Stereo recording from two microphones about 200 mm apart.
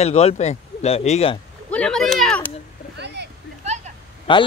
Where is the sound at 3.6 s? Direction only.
35° right (ahead or behind).